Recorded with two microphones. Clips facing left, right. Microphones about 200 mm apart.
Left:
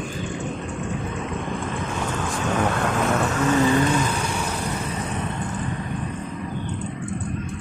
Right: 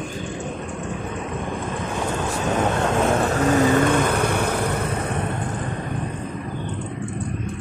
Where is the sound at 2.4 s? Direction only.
25° right (ahead or behind); by 5.2 s 55° right (ahead or behind).